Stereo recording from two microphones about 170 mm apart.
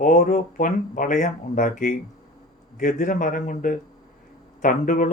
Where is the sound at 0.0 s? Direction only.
50° left (ahead or behind).